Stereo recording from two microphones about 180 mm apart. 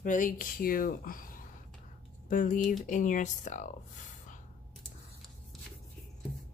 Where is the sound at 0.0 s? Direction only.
45° left (ahead or behind).